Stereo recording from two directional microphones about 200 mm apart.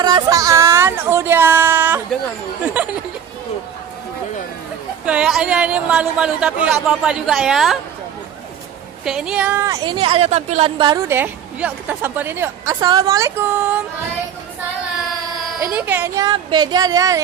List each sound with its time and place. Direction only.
0.0 s a sound: 20° right (ahead or behind)
2.8 s a woman's voice: 5° right (ahead or behind)
5.0 s a man's voice: 5° right (ahead or behind)
9.0 s a man's voice: 5° right (ahead or behind)
9.8 s speech: 25° right (ahead or behind)
11.1 s a woman's voice: 10° right (ahead or behind)
15.6 s a woman's voice: 10° right (ahead or behind)